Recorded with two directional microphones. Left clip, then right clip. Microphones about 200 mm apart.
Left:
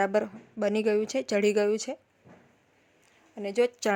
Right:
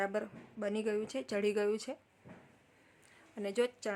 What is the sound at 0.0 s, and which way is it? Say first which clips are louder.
Speech: left 10 dB; 35° left (ahead or behind).